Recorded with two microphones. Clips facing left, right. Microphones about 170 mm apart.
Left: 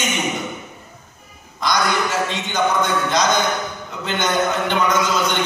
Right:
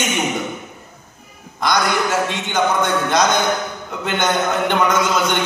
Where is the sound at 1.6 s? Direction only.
55° right (ahead or behind).